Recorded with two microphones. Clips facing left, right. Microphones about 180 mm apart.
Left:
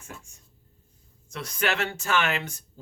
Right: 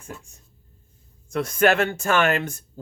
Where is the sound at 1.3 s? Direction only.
50° right (ahead or behind).